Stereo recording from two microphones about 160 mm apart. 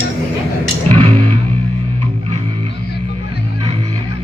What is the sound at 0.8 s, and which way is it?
Music, 10° left (ahead or behind).